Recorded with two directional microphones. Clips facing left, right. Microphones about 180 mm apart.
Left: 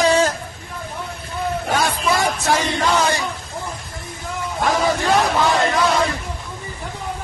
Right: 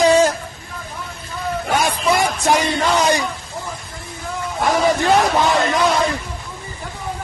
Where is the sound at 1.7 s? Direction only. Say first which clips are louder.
Right 3 dB; 15° right (ahead or behind).